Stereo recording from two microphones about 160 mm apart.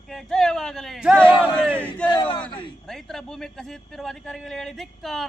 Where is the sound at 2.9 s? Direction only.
5° left (ahead or behind).